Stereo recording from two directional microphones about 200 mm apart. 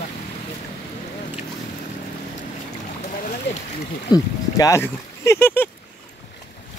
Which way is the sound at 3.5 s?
65° left (ahead or behind).